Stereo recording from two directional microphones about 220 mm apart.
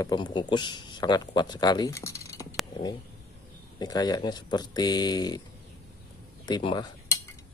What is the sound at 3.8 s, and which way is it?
Speech, 20° left (ahead or behind).